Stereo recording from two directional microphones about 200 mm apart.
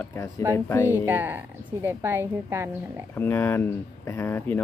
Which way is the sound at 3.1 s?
10° left (ahead or behind).